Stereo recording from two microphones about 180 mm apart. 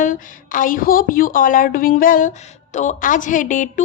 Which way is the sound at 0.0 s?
45° left (ahead or behind).